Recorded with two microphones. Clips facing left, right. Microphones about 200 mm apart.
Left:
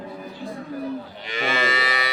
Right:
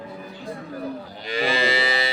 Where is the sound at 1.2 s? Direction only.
35° right (ahead or behind).